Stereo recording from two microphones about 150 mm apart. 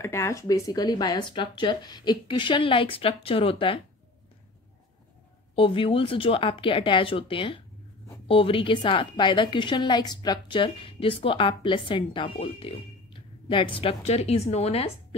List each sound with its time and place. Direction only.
0.0 s a woman's voice: 20° left (ahead or behind); by 3.8 s 40° left (ahead or behind)
5.6 s a woman's voice: 35° left (ahead or behind)